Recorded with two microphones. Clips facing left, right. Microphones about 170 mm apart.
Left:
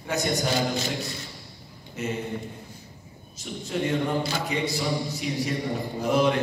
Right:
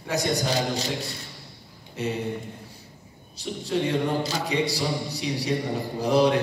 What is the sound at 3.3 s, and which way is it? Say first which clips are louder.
Speech: right 3 dB; 35° right (ahead or behind).